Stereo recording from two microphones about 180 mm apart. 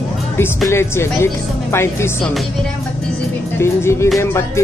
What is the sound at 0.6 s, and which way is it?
Speech, 15° left (ahead or behind).